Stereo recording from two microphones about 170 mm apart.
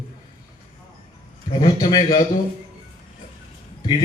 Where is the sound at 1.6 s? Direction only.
25° left (ahead or behind).